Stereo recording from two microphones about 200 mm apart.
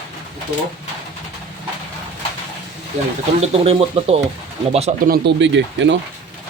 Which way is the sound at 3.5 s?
30° right (ahead or behind).